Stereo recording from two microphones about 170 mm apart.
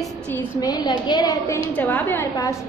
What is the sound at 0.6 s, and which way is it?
A woman's voice, 20° left (ahead or behind).